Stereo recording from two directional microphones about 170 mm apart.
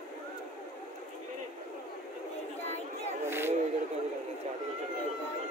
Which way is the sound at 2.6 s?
40° left (ahead or behind).